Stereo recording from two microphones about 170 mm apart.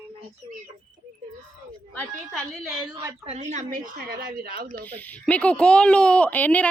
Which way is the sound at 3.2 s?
45° right (ahead or behind).